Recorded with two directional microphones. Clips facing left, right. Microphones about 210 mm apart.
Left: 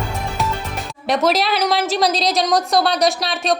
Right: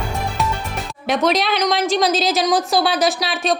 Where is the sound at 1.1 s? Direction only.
Centre (ahead or behind).